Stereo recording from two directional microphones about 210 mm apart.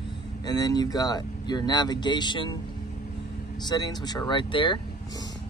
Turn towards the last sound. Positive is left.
turn(degrees=20)  # may be behind; listen again after turning